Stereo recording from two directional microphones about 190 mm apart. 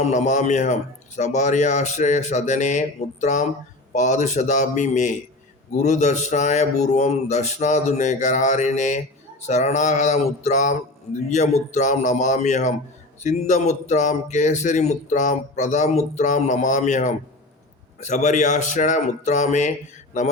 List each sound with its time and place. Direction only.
0.0 s speech: 40° left (ahead or behind)